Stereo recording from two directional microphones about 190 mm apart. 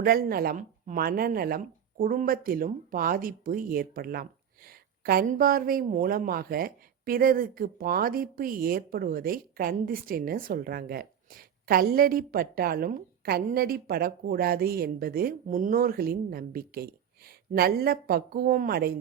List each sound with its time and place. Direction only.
0.0 s speech: 50° right (ahead or behind)